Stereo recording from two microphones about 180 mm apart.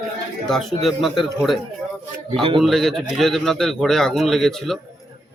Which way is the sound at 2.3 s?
30° right (ahead or behind).